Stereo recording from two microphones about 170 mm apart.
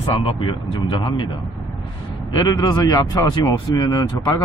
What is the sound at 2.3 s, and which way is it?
Speech, 25° left (ahead or behind).